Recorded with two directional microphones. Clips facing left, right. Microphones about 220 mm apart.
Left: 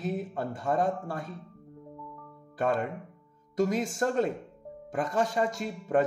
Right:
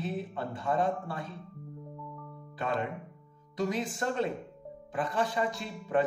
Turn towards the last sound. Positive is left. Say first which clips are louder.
# left 3 dB
turn(degrees=45)  # may be behind; listen again after turning